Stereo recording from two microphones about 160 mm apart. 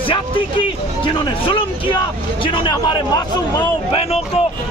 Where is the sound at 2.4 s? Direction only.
30° left (ahead or behind).